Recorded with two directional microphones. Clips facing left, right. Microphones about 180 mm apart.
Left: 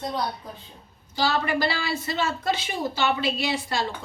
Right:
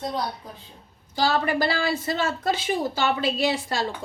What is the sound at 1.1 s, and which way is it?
A woman's voice, 45° right (ahead or behind).